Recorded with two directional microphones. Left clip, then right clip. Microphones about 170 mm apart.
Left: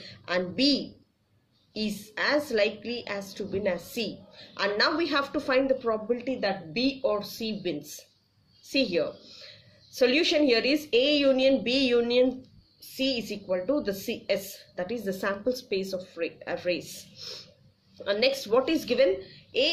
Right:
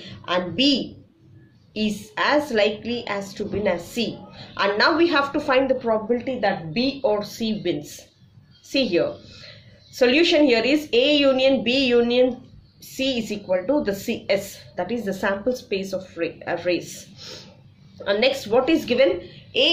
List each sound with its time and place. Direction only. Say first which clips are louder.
0.0 s a woman's voice: right 5 dB; 20° left (ahead or behind)
18.0 s a woman's voice: right 5 dB; 25° left (ahead or behind)